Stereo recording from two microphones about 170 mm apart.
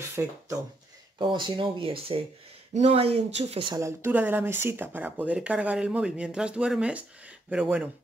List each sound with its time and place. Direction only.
0.1 s speech: 20° right (ahead or behind); by 3.7 s 35° right (ahead or behind)
3.7 s speech: 15° right (ahead or behind)